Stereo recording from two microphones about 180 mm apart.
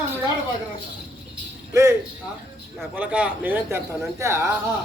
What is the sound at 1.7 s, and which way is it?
A man's voice, 15° right (ahead or behind).